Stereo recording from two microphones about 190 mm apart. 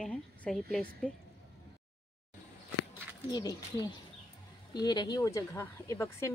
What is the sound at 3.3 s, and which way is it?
Speech, 20° left (ahead or behind).